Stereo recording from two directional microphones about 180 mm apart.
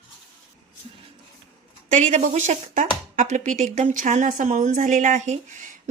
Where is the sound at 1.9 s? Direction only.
40° right (ahead or behind).